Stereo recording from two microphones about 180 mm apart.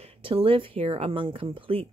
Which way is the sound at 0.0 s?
30° right (ahead or behind).